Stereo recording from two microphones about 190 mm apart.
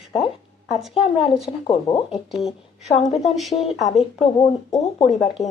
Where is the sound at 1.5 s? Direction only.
25° left (ahead or behind).